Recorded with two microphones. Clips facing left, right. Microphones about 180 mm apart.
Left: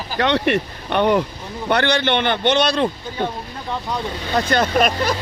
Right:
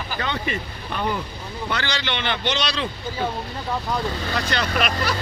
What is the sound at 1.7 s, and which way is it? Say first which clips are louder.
A man's voice: left 10 dB; 60° left (ahead or behind).